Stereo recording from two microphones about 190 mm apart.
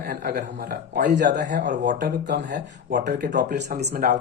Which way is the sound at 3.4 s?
60° right (ahead or behind).